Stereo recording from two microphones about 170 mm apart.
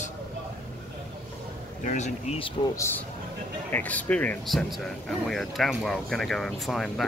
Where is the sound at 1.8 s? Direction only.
45° left (ahead or behind).